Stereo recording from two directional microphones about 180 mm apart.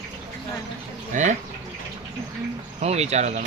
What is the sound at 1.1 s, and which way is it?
Speech, 45° right (ahead or behind).